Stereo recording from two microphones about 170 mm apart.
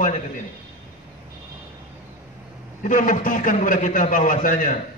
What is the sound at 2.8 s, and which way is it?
A man's voice, 50° left (ahead or behind).